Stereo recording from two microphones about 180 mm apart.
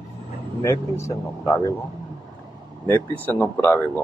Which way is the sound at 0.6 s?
15° left (ahead or behind).